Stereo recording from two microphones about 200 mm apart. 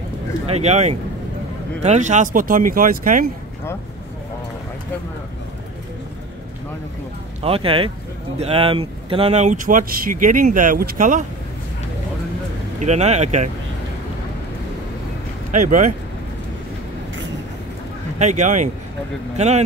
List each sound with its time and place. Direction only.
0.5 s speech: 35° right (ahead or behind)
7.4 s speech: 30° right (ahead or behind)
12.8 s speech: 35° right (ahead or behind)
15.5 s speech: 40° right (ahead or behind)
18.2 s speech: 35° right (ahead or behind)